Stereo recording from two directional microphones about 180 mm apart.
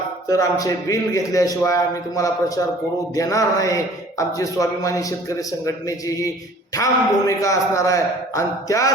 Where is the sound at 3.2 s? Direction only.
20° left (ahead or behind).